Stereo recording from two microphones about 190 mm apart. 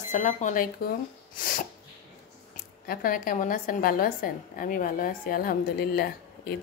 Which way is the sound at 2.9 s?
50° left (ahead or behind).